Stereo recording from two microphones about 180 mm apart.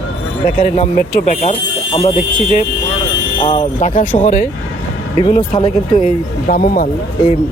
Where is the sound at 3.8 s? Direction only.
45° left (ahead or behind).